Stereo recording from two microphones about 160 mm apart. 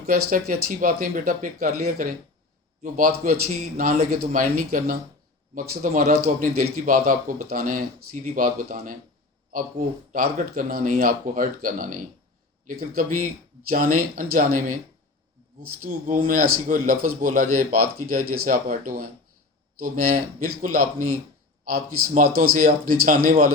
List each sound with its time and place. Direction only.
0.1 s speech: 60° right (ahead or behind)
4.1 s speech: 55° right (ahead or behind)
15.8 s speech: 55° right (ahead or behind)